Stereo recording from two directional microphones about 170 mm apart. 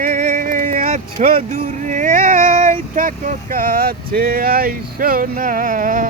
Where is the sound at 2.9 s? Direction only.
45° right (ahead or behind).